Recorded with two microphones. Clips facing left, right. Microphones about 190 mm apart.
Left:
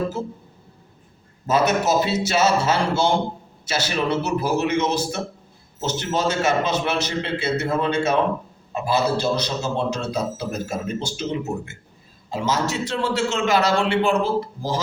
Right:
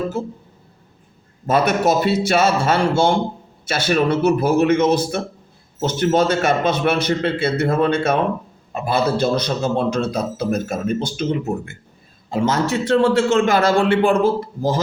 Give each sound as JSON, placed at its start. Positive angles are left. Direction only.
{"t": 1.5, "sound": "a man's voice", "side_deg": -55}